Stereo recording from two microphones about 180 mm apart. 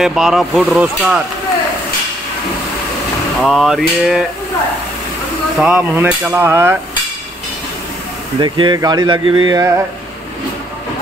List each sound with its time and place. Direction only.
0.0 s speech: 5° right (ahead or behind)
3.3 s speech: centre (ahead or behind)
5.6 s a sound: 10° right (ahead or behind)
8.4 s speech: 25° right (ahead or behind)